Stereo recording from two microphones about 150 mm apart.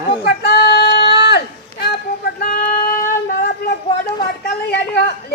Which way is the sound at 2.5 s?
70° left (ahead or behind).